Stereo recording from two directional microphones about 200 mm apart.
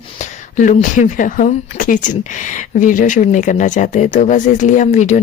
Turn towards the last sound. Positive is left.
turn(degrees=35)  # may be behind; listen again after turning